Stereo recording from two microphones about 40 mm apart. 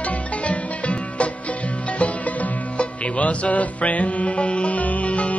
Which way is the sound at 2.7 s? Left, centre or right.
Left.